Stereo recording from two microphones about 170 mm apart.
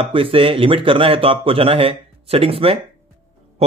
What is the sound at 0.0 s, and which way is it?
Speech, 30° right (ahead or behind).